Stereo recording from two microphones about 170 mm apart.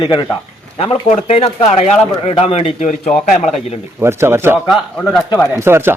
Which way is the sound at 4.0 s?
15° right (ahead or behind).